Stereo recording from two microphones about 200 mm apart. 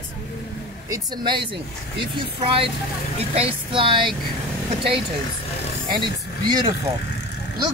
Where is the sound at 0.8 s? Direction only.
20° right (ahead or behind).